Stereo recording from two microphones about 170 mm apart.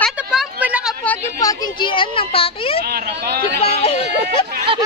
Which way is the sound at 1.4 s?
20° left (ahead or behind).